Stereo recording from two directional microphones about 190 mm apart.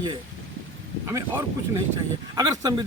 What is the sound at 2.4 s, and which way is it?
Speech, 20° right (ahead or behind).